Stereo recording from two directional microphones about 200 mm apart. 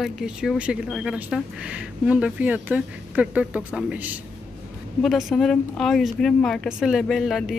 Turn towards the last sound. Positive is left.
turn(degrees=0)  # may be behind; listen again after turning